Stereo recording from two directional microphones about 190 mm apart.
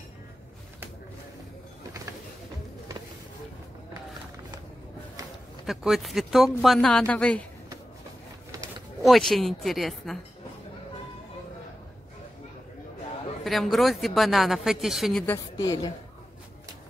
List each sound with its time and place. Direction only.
5.7 s a woman's voice: centre (ahead or behind)
8.5 s a sound: 20° right (ahead or behind)
9.0 s a woman's voice: centre (ahead or behind)
13.4 s a woman's voice: centre (ahead or behind)
15.2 s a woman's voice: 15° left (ahead or behind)